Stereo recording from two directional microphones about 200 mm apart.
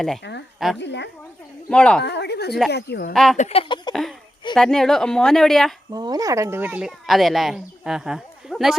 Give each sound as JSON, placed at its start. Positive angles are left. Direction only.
{"t": 0.2, "sound": "speech", "side_deg": 60}
{"t": 1.7, "sound": "a woman's voice", "side_deg": 5}
{"t": 2.0, "sound": "speech", "side_deg": 55}
{"t": 3.1, "sound": "a woman's voice", "side_deg": 0}
{"t": 3.3, "sound": "speech", "side_deg": 30}
{"t": 4.5, "sound": "a woman's voice", "side_deg": 0}
{"t": 5.9, "sound": "speech", "side_deg": -20}